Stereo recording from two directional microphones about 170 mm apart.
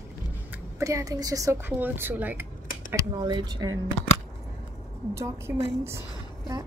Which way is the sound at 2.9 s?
20° right (ahead or behind).